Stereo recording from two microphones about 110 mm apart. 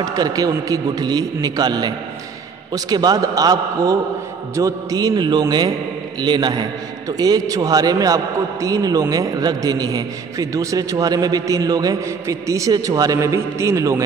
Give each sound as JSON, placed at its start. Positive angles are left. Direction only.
{"t": 0.0, "sound": "a man's voice", "side_deg": -35}